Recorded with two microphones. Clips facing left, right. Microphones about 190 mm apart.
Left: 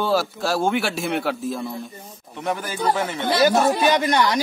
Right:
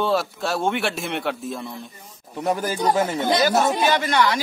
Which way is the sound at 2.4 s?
40° right (ahead or behind).